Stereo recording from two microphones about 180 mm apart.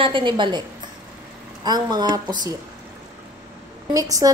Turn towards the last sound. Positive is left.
turn(degrees=-20)  # may be behind; listen again after turning